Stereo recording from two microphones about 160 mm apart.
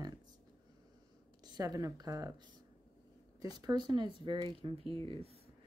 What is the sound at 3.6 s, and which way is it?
Speech, 25° right (ahead or behind).